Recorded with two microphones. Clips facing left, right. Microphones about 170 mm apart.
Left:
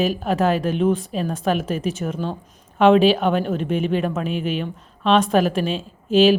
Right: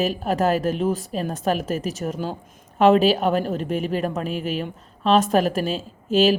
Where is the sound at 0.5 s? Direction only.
Centre (ahead or behind).